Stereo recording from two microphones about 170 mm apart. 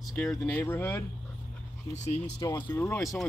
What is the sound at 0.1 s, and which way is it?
Speech, 5° left (ahead or behind).